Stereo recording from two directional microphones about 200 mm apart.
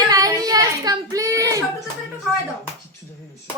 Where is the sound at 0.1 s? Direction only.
15° right (ahead or behind).